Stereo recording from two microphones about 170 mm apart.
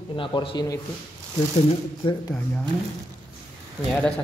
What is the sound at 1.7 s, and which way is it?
Speech, 30° left (ahead or behind).